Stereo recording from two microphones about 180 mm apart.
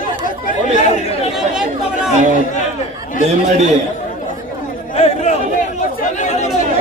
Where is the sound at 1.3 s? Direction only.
5° right (ahead or behind).